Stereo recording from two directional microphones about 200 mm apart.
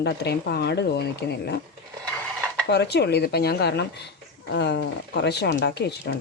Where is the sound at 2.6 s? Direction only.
55° left (ahead or behind).